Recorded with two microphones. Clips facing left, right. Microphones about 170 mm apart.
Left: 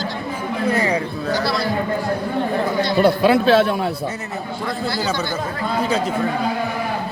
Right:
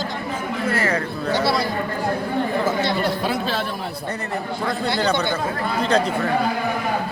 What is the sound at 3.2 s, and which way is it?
Speech, 75° left (ahead or behind).